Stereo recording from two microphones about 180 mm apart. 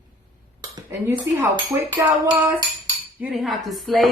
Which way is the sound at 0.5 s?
15° right (ahead or behind).